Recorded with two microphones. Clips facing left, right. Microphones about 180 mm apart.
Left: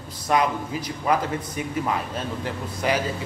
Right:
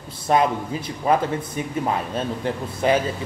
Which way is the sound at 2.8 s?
25° right (ahead or behind).